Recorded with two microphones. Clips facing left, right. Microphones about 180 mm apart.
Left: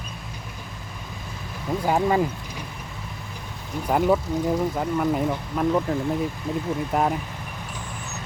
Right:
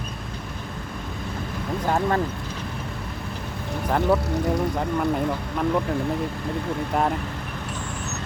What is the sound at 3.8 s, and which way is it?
Speech, 10° left (ahead or behind).